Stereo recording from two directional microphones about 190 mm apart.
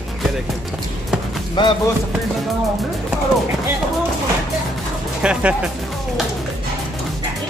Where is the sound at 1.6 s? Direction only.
25° left (ahead or behind).